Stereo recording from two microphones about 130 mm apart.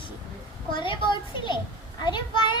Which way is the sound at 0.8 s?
35° left (ahead or behind).